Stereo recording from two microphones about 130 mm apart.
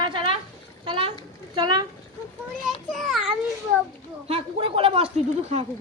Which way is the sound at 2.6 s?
Centre (ahead or behind).